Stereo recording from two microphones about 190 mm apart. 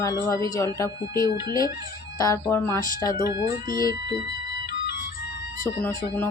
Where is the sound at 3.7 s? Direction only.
50° left (ahead or behind).